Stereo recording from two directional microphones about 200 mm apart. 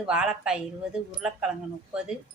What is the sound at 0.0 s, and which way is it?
Speech, 5° right (ahead or behind).